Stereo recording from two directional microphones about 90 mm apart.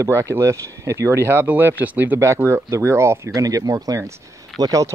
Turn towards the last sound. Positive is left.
turn(degrees=-40)  # may be behind; listen again after turning